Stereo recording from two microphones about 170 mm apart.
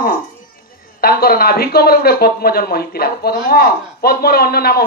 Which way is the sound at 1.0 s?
65° left (ahead or behind).